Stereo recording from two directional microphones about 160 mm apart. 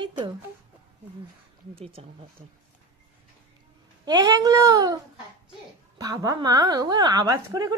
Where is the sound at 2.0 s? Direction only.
35° right (ahead or behind).